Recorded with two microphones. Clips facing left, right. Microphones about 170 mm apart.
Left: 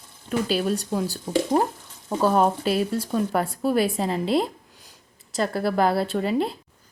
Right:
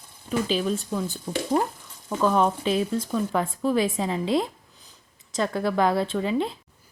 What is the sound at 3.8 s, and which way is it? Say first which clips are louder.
Speech: left 1 dB; 35° left (ahead or behind).